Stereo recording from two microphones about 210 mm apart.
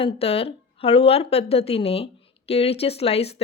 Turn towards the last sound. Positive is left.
turn(degrees=30)  # may be behind; listen again after turning